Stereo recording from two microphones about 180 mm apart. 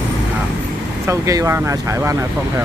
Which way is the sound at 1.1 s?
15° right (ahead or behind).